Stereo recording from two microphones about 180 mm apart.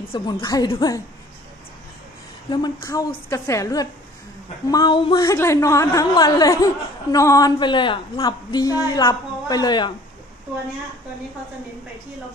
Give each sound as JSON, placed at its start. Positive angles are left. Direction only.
{"t": 0.1, "sound": "speech", "side_deg": 25}
{"t": 2.5, "sound": "a woman's voice", "side_deg": 20}